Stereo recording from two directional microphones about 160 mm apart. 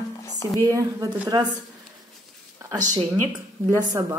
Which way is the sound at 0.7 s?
20° right (ahead or behind).